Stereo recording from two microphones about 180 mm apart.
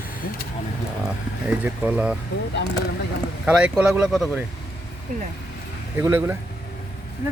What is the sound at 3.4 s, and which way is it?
Speech, 5° right (ahead or behind).